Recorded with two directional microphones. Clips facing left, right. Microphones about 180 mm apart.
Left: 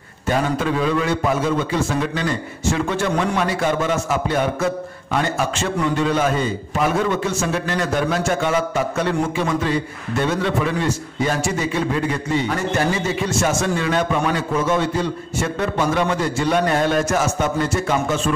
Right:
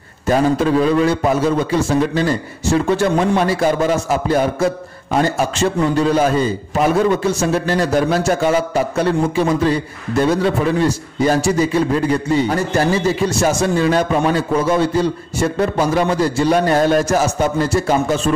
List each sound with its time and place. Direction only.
0.3 s a man's voice: 35° right (ahead or behind)